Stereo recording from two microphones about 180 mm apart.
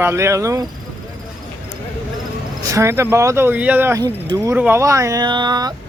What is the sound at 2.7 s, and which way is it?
Speech, 15° right (ahead or behind).